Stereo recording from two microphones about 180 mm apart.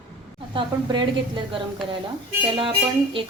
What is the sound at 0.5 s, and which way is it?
A woman's voice, 25° right (ahead or behind).